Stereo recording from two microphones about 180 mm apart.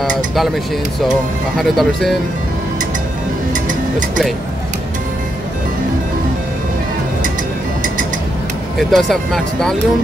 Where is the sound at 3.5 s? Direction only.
45° right (ahead or behind).